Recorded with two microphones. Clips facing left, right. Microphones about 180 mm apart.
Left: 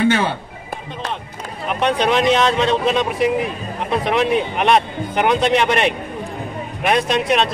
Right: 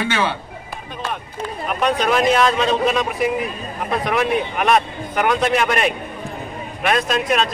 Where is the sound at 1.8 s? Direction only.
25° left (ahead or behind).